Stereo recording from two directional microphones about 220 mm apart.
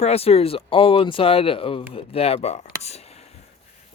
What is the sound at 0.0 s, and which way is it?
Speech, 25° left (ahead or behind).